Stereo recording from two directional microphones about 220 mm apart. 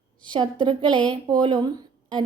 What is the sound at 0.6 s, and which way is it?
A woman's voice, 20° right (ahead or behind).